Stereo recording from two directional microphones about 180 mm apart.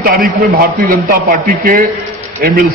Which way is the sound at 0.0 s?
55° right (ahead or behind).